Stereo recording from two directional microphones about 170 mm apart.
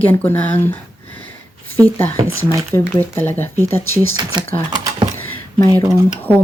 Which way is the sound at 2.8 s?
15° left (ahead or behind).